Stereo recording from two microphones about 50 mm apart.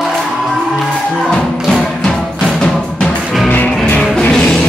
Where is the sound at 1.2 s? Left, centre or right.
Centre.